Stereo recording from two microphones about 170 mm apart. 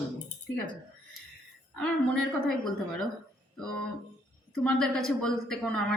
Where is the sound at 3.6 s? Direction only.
5° left (ahead or behind).